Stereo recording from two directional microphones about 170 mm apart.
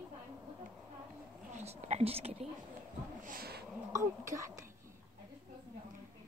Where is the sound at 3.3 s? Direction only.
65° right (ahead or behind).